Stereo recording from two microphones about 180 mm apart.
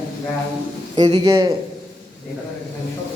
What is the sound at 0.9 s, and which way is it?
Speech, 25° right (ahead or behind).